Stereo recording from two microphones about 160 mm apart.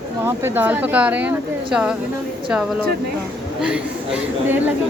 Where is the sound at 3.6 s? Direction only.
5° right (ahead or behind).